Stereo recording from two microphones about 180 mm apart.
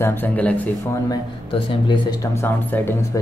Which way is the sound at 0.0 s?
10° left (ahead or behind).